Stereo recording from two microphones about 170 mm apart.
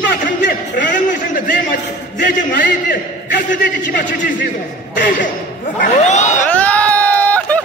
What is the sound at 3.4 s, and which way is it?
Speech, 50° left (ahead or behind).